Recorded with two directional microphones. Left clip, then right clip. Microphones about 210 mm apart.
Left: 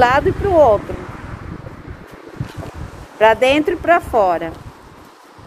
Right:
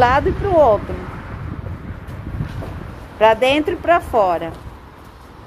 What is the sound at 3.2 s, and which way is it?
A woman's voice, 20° left (ahead or behind).